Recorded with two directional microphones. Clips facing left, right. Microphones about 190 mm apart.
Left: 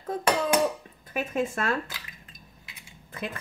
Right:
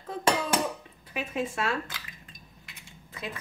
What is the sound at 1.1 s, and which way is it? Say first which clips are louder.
Speech: left 3 dB; 50° left (ahead or behind).